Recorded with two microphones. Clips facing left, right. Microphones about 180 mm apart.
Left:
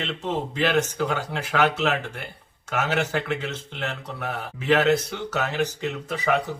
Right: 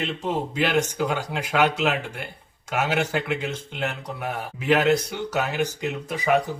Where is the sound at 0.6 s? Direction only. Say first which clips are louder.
Even; 10° right (ahead or behind).